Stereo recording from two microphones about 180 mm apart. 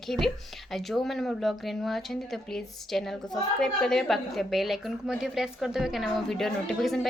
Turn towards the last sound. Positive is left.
turn(degrees=0)  # may be behind; listen again after turning